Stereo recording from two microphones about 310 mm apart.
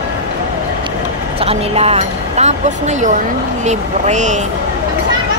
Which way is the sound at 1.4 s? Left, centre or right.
Centre.